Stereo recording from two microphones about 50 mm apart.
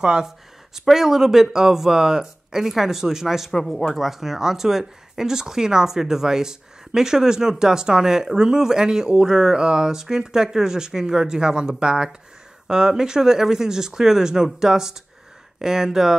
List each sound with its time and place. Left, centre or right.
0.0 s speech: centre
3.5 s speech: centre
3.9 s speech: centre